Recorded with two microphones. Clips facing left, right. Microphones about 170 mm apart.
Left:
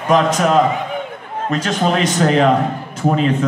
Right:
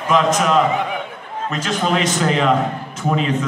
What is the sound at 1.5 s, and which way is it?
A man's voice, 35° left (ahead or behind).